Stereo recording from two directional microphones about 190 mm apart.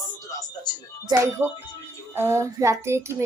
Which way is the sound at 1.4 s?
10° right (ahead or behind).